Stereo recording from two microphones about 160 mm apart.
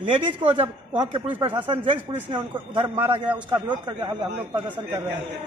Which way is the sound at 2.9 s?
15° right (ahead or behind).